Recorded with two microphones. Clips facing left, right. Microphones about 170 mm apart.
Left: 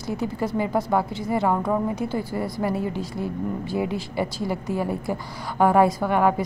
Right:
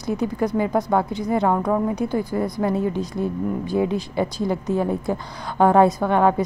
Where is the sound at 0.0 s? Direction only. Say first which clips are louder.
Right 4 dB; 20° right (ahead or behind).